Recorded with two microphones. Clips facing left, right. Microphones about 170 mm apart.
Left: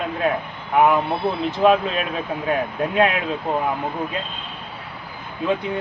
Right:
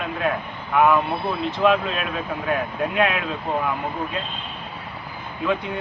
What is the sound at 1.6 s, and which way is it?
Speech, 35° left (ahead or behind).